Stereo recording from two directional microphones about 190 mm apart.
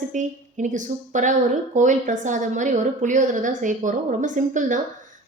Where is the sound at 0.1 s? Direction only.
40° right (ahead or behind).